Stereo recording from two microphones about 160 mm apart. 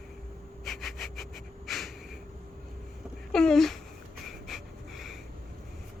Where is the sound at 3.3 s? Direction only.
5° left (ahead or behind).